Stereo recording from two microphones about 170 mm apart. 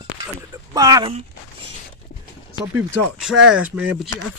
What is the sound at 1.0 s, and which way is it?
Speech, 35° right (ahead or behind).